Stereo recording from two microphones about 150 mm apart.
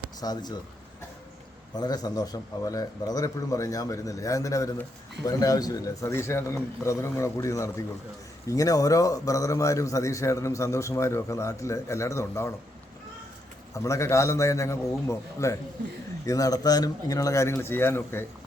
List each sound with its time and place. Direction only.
0.2 s a man's voice: 25° left (ahead or behind)
1.7 s a man's voice: 25° left (ahead or behind)
13.7 s a man's voice: 20° left (ahead or behind)